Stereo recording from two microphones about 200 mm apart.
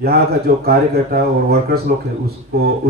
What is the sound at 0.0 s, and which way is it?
Speech, 50° right (ahead or behind).